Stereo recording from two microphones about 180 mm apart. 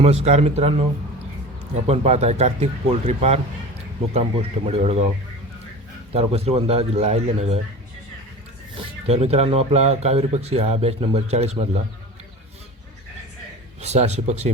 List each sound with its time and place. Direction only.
0.0 s speech: 35° right (ahead or behind)
1.9 s speech: 35° right (ahead or behind)
6.1 s speech: 35° right (ahead or behind)
9.0 s speech: 35° right (ahead or behind)
13.8 s speech: 40° right (ahead or behind)